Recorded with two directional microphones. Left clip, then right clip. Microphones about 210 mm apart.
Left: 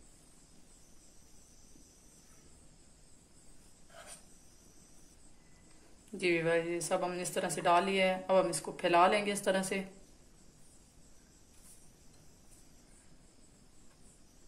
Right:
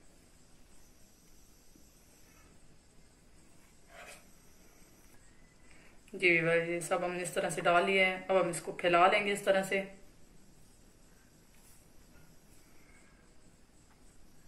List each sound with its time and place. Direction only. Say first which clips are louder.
6.1 s speech: right 3 dB; 45° left (ahead or behind)